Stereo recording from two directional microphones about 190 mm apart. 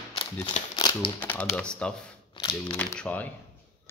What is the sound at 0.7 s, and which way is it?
Crumpling, 20° left (ahead or behind).